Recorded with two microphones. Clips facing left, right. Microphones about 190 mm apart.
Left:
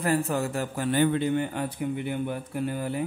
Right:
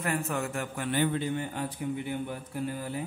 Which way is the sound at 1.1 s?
65° left (ahead or behind).